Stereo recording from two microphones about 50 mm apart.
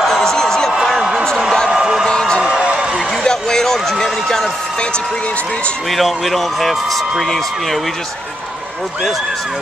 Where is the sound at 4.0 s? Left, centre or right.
Centre; by 5.7 s left.